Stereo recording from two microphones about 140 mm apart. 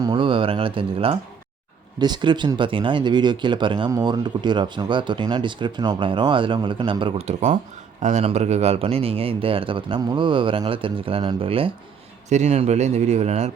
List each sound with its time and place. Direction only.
0.0 s a sound: 35° right (ahead or behind)
2.0 s speech: 30° right (ahead or behind)
7.3 s a man's voice: 60° right (ahead or behind); by 11.7 s 40° right (ahead or behind)
12.3 s a man's voice: 50° right (ahead or behind)